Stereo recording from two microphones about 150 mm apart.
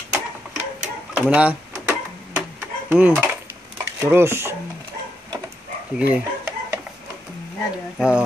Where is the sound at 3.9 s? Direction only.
15° right (ahead or behind).